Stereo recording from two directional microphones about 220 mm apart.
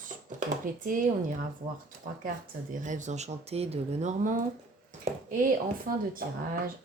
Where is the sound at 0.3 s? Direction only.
35° right (ahead or behind).